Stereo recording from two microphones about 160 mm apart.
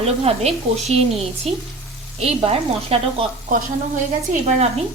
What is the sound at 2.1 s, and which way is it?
Speech, 40° right (ahead or behind).